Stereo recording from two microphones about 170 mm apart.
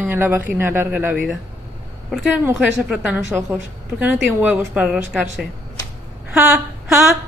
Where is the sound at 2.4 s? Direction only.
10° right (ahead or behind).